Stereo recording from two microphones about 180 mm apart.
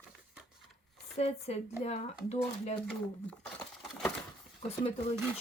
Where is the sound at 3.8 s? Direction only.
5° left (ahead or behind).